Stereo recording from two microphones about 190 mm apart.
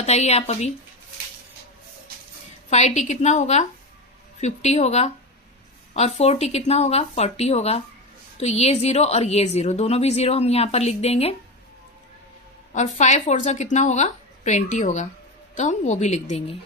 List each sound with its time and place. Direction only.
0.0 s a woman's voice: 35° left (ahead or behind)
2.6 s a woman's voice: 35° left (ahead or behind)
12.7 s a woman's voice: 40° left (ahead or behind)